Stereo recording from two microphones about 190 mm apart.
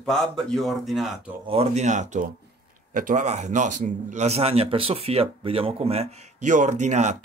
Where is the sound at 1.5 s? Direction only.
35° right (ahead or behind).